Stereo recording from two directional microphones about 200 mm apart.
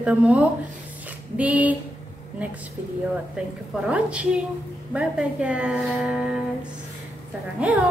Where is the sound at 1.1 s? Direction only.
5° right (ahead or behind).